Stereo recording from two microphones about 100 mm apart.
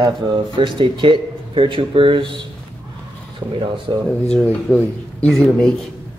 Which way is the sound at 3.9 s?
50° right (ahead or behind).